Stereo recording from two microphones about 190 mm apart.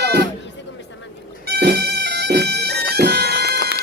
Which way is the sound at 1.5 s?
60° right (ahead or behind).